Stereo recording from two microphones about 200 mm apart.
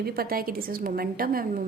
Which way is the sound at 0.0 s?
50° right (ahead or behind).